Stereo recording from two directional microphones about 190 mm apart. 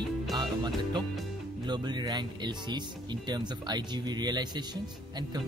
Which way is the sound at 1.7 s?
20° right (ahead or behind).